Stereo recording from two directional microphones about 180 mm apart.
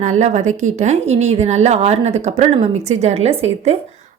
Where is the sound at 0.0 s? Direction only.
40° right (ahead or behind).